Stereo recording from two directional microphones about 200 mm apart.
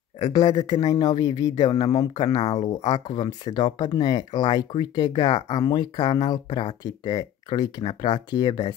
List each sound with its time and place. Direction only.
0.2 s a man's voice: 20° left (ahead or behind)